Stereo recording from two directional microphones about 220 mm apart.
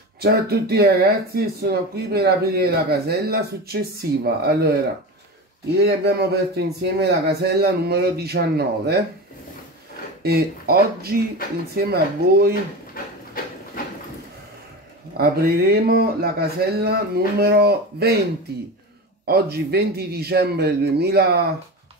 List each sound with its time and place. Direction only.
0.2 s speech: 45° right (ahead or behind)
5.8 s speech: 45° right (ahead or behind)
10.2 s speech: 45° right (ahead or behind)
15.1 s speech: 45° right (ahead or behind)
19.2 s speech: 45° right (ahead or behind)